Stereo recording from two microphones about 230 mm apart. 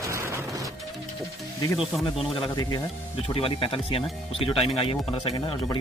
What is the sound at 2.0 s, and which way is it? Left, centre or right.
Speech, centre.